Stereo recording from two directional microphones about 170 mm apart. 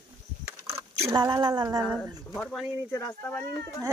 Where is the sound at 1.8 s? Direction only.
Centre (ahead or behind).